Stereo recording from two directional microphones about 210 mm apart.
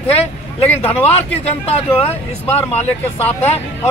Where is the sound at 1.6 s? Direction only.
30° left (ahead or behind).